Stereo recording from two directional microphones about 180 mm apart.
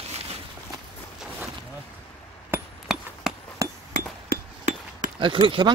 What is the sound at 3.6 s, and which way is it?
Glass, 15° right (ahead or behind).